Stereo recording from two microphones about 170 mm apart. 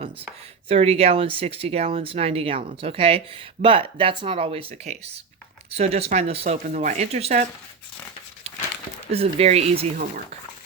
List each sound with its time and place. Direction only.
0.7 s speech: 35° right (ahead or behind)
9.1 s speech: 35° right (ahead or behind)